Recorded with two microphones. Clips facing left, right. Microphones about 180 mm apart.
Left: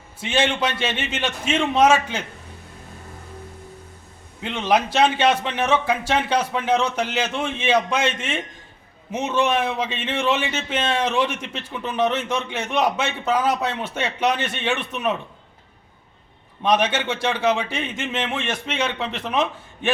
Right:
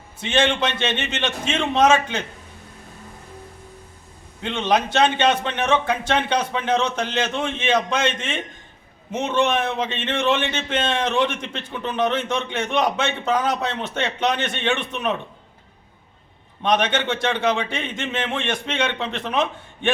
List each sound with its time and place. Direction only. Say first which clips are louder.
0.2 s a man's voice: right 1 dB; 5° left (ahead or behind)
4.4 s a man's voice: even; 5° left (ahead or behind)
16.6 s a man's voice: even; 5° left (ahead or behind)